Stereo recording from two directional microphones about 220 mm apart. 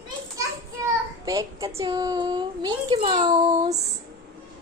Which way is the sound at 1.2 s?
15° right (ahead or behind).